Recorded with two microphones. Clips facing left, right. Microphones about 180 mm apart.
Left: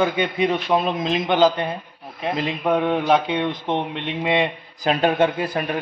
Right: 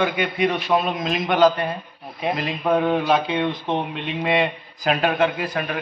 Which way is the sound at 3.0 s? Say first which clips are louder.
Left 1 dB; 20° left (ahead or behind).